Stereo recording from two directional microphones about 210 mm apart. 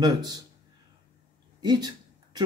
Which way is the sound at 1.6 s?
20° right (ahead or behind).